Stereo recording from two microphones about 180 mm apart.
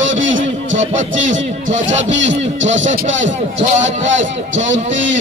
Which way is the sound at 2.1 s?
90° right.